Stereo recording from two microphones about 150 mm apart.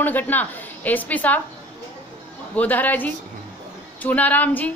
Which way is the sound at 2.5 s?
10° left (ahead or behind).